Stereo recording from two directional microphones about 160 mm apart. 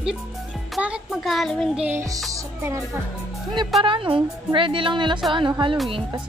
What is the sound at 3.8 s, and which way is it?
A woman's voice, 30° right (ahead or behind).